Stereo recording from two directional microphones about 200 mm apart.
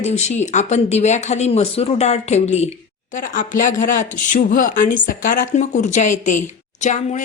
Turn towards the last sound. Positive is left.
turn(degrees=35)  # may be behind; listen again after turning